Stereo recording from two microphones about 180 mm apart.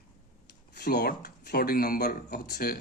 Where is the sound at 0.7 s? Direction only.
60° left (ahead or behind).